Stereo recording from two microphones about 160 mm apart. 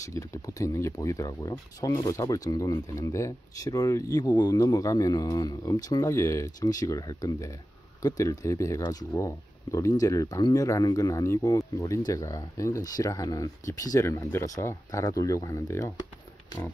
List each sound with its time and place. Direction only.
0.0 s speech: 20° left (ahead or behind)